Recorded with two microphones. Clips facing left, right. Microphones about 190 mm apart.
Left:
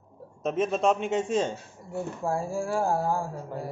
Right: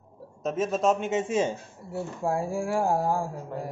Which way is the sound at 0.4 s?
Centre (ahead or behind).